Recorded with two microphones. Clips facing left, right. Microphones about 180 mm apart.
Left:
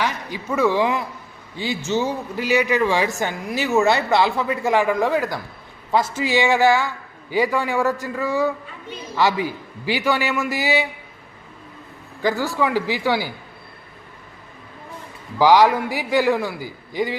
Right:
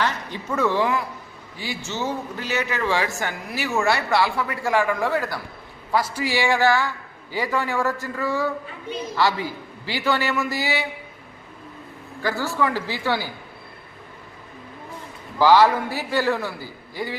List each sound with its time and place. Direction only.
0.0 s a man's voice: 10° left (ahead or behind)
12.2 s a man's voice: 15° left (ahead or behind)
15.4 s a man's voice: 15° left (ahead or behind)